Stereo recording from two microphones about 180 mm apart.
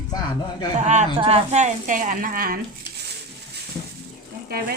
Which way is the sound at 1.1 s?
35° right (ahead or behind).